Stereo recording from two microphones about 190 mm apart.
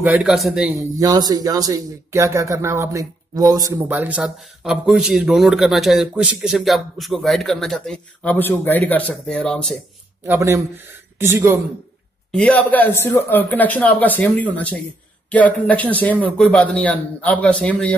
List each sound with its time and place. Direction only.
0.0 s speech: 5° right (ahead or behind)
0.9 s speech: 20° right (ahead or behind)
3.9 s a man's voice: 10° right (ahead or behind)
10.2 s speech: 15° right (ahead or behind)
12.3 s a man's voice: 5° left (ahead or behind)